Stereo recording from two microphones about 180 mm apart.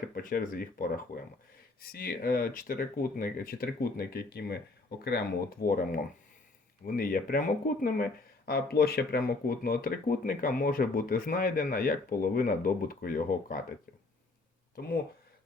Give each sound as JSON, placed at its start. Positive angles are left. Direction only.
{"t": 0.1, "sound": "speech", "side_deg": 50}
{"t": 14.8, "sound": "speech", "side_deg": 55}